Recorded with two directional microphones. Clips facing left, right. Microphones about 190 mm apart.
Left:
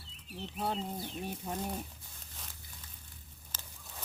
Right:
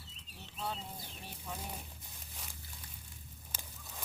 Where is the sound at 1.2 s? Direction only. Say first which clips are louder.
Left 4 dB; 50° left (ahead or behind).